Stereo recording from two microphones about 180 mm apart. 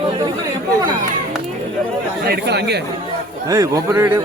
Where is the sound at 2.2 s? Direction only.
65° right (ahead or behind).